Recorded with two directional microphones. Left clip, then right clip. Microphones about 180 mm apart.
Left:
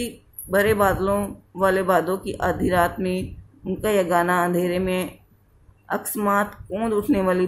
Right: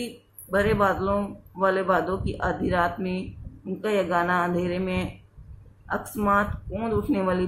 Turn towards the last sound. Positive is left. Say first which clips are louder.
# left 4 dB
turn(degrees=40)  # may be behind; listen again after turning